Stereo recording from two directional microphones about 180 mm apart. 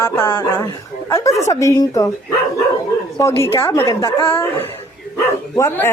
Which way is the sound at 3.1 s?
15° left (ahead or behind).